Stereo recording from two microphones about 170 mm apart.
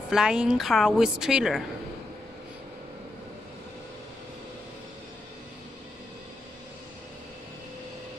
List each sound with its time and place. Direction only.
0.1 s a woman's voice: 5° right (ahead or behind)